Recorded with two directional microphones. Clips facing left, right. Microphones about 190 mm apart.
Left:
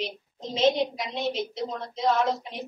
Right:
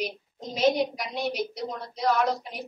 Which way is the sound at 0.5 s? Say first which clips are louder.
Even; 20° left (ahead or behind).